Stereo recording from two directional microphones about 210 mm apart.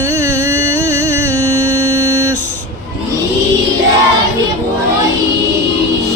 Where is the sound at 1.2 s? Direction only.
90° right.